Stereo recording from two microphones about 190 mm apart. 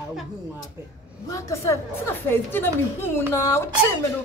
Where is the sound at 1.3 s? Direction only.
15° left (ahead or behind).